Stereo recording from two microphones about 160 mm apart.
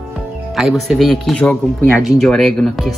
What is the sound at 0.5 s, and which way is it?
Speech, centre (ahead or behind).